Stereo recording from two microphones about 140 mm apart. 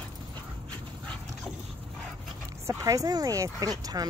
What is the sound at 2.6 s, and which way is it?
Speech, 25° right (ahead or behind).